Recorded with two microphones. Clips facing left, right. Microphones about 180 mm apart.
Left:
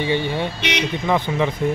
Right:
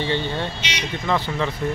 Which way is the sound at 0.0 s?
10° left (ahead or behind).